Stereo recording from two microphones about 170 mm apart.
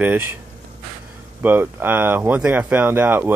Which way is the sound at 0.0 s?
10° right (ahead or behind).